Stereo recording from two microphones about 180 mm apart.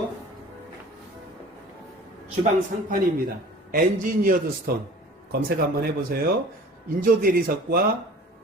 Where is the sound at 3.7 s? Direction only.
50° right (ahead or behind).